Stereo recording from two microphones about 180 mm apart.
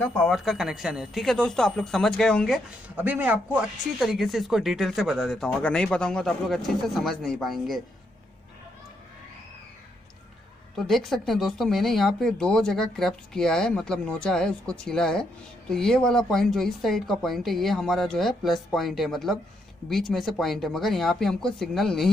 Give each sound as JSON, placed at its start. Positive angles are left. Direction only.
{"t": 0.0, "sound": "speech", "side_deg": 5}
{"t": 3.0, "sound": "speech", "side_deg": -10}
{"t": 10.8, "sound": "speech", "side_deg": 0}